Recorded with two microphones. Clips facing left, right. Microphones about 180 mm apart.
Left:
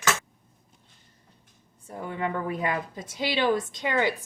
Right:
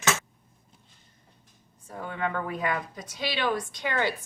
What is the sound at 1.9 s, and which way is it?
A woman's voice, 25° left (ahead or behind).